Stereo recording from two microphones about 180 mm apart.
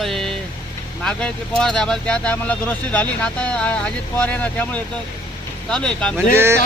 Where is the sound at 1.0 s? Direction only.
5° left (ahead or behind).